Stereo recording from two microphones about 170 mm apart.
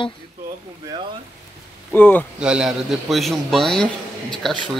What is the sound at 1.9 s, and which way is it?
Speech, 10° left (ahead or behind).